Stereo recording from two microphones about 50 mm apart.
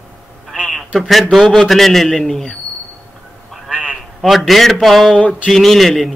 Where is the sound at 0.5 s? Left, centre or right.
Right.